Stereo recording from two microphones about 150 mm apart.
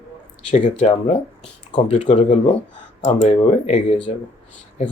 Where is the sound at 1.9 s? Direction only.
50° left (ahead or behind).